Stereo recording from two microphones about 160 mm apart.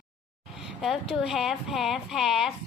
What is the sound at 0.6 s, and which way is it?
A child's voice, centre (ahead or behind).